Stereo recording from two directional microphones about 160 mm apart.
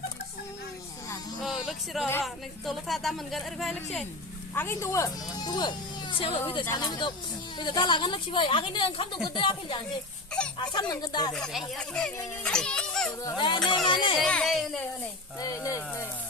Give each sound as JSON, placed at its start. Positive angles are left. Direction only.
{"t": 1.4, "sound": "music", "side_deg": 0}
{"t": 2.2, "sound": "speech", "side_deg": 0}
{"t": 4.5, "sound": "a woman's voice", "side_deg": 15}
{"t": 11.3, "sound": "a child's voice", "side_deg": 0}
{"t": 13.2, "sound": "a woman's voice", "side_deg": 30}
{"t": 14.2, "sound": "speech", "side_deg": 5}
{"t": 15.4, "sound": "speech", "side_deg": 20}